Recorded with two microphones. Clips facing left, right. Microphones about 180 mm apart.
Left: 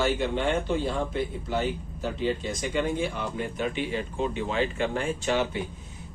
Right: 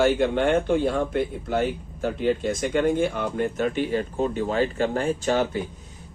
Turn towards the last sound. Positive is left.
turn(degrees=-40)  # may be behind; listen again after turning